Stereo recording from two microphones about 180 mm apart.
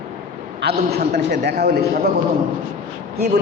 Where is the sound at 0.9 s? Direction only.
60° right (ahead or behind).